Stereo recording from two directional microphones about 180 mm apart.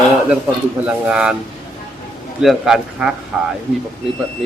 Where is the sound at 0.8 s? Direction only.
5° right (ahead or behind).